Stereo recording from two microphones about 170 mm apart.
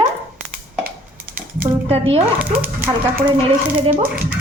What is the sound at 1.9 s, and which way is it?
Speech, 35° right (ahead or behind).